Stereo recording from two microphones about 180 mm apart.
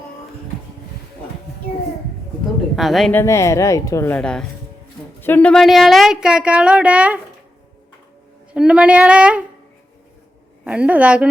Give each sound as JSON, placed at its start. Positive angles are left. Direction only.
{"t": 2.7, "sound": "speech", "side_deg": 0}
{"t": 3.2, "sound": "speech", "side_deg": 15}
{"t": 8.5, "sound": "speech", "side_deg": -5}
{"t": 10.6, "sound": "a woman's voice", "side_deg": -5}